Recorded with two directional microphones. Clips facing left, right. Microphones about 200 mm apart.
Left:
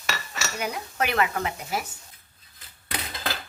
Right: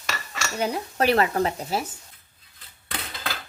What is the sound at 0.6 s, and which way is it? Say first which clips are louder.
Speech: right 6 dB; 30° right (ahead or behind).